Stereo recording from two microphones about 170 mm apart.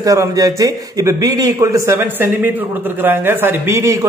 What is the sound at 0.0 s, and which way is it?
A man's voice, 20° right (ahead or behind).